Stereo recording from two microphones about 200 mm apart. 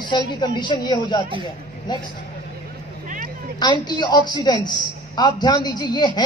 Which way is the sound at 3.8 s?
20° left (ahead or behind).